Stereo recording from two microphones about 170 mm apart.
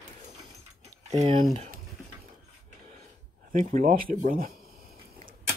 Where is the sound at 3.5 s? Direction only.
50° right (ahead or behind).